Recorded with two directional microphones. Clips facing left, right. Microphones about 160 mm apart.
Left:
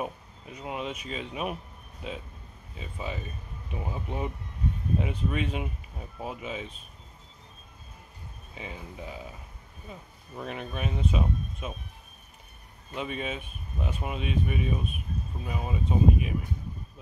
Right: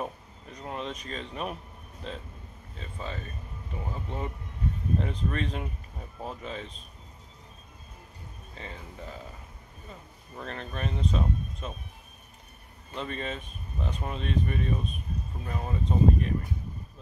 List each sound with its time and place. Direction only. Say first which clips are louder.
0.0 s speech: left 1 dB; 10° left (ahead or behind)
2.7 s speech: left 2 dB; 10° left (ahead or behind)
8.5 s speech: left 2 dB; 10° left (ahead or behind)
12.9 s speech: left 1 dB; 10° left (ahead or behind)